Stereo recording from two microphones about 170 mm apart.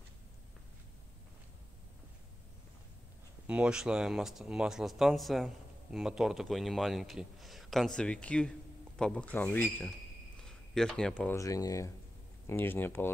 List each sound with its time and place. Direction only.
3.4 s speech: 5° right (ahead or behind)
11.3 s speech: 20° left (ahead or behind)